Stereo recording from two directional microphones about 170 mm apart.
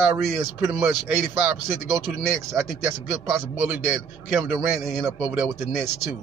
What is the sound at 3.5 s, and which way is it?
Speech, 10° right (ahead or behind).